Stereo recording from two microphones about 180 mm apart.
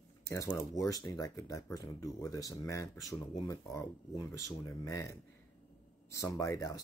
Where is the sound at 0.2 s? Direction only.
15° left (ahead or behind).